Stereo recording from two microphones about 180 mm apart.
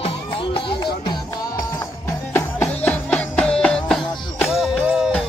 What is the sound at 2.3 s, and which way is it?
Music, 10° left (ahead or behind).